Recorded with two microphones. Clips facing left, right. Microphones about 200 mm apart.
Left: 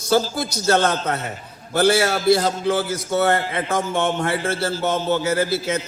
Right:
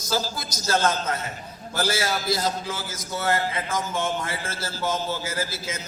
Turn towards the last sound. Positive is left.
turn(degrees=65)  # may be behind; listen again after turning